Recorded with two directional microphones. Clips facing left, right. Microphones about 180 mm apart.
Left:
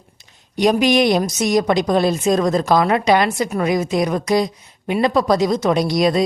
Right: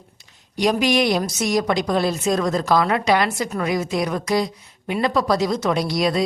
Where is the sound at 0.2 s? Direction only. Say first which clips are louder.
Left 4 dB; 20° left (ahead or behind).